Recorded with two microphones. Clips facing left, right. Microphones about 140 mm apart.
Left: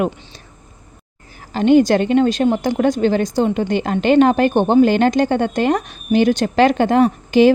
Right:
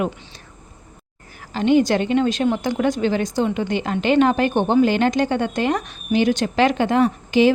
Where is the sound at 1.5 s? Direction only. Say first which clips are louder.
Left 4 dB; 45° left (ahead or behind).